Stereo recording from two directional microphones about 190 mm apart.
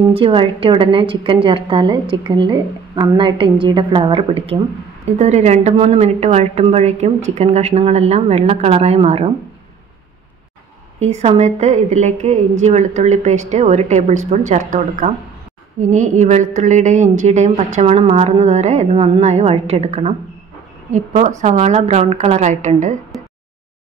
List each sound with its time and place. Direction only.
0.1 s a woman's voice: 30° right (ahead or behind)
11.0 s a woman's voice: 35° right (ahead or behind)